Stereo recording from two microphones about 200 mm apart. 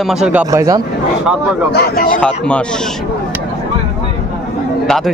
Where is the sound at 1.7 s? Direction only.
50° left (ahead or behind).